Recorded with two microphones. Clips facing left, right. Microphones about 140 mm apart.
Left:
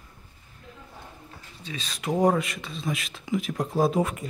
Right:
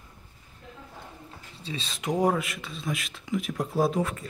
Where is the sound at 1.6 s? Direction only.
25° right (ahead or behind).